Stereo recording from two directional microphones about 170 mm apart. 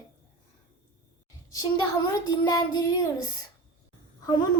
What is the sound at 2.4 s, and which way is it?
Speech, 20° left (ahead or behind).